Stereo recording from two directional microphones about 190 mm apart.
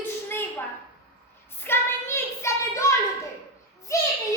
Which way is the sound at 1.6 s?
10° left (ahead or behind).